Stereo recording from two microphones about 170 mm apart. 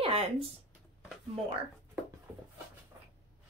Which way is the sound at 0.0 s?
35° right (ahead or behind).